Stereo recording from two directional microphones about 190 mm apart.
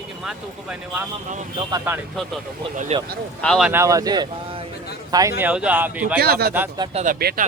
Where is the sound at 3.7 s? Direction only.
15° right (ahead or behind).